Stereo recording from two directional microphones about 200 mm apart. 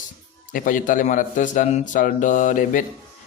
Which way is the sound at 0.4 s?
40° left (ahead or behind).